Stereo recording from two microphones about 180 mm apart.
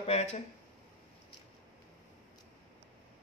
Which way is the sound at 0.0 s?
40° left (ahead or behind).